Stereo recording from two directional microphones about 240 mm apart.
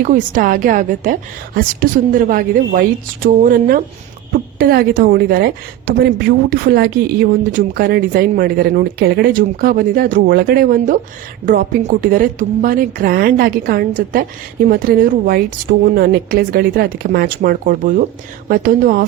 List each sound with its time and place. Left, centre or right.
0.0 s a woman's voice: right